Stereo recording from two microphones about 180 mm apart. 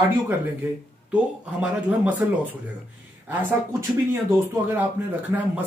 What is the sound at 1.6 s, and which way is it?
Speech, 5° right (ahead or behind).